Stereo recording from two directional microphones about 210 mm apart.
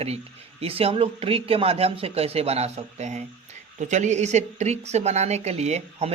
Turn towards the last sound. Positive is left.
turn(degrees=-30)  # may be behind; listen again after turning